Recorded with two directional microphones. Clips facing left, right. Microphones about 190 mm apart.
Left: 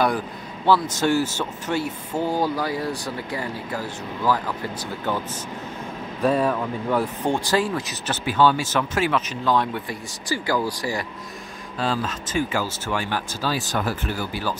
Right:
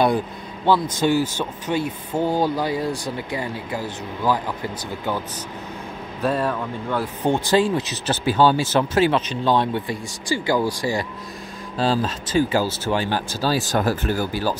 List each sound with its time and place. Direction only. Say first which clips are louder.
1.0 s speech: right 1 dB; 20° right (ahead or behind)
6.2 s speech: left 2 dB; centre (ahead or behind)
7.2 s speech: right 6 dB; 25° right (ahead or behind); by 14.6 s 40° right (ahead or behind)